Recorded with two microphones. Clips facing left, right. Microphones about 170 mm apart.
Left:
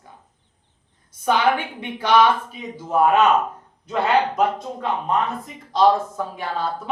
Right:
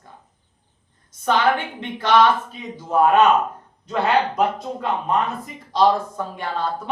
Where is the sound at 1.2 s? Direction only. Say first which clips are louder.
Even; 10° left (ahead or behind).